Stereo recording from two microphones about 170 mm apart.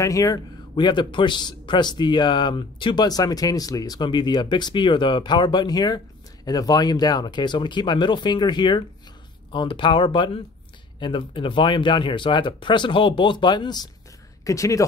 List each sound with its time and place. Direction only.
0.0 s a man's voice: 20° left (ahead or behind)